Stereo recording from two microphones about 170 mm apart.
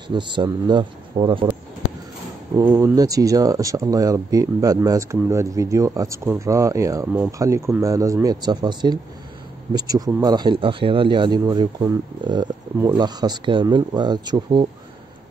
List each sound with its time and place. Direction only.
0.1 s speech: 25° right (ahead or behind)
2.5 s speech: 15° right (ahead or behind)